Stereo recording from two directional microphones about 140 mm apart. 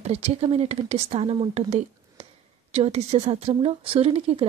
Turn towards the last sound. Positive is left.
turn(degrees=-45)  # may be behind; listen again after turning